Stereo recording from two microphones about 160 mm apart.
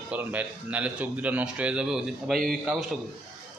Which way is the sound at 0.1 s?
10° right (ahead or behind).